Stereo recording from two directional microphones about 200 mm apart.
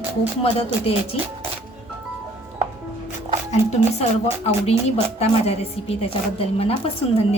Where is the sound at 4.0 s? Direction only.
30° left (ahead or behind).